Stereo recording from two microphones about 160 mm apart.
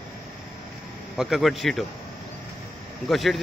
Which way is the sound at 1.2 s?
Centre (ahead or behind).